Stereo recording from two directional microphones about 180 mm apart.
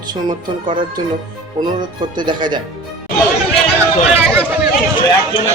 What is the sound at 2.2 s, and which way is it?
Speech, 25° right (ahead or behind).